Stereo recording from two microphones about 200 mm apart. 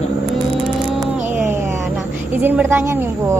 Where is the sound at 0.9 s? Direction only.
5° right (ahead or behind).